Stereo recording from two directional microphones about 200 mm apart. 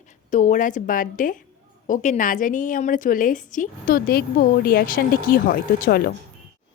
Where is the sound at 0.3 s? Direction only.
40° left (ahead or behind).